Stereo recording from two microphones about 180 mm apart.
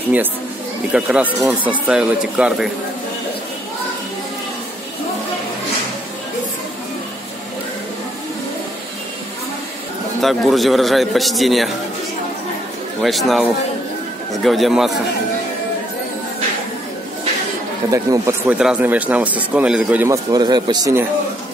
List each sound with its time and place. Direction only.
0.9 s speech: 5° right (ahead or behind)
10.2 s speech: centre (ahead or behind)
13.0 s a man's voice: centre (ahead or behind)
17.9 s speech: 15° right (ahead or behind)
18.6 s speech: 5° right (ahead or behind)
20.2 s speech: 20° right (ahead or behind)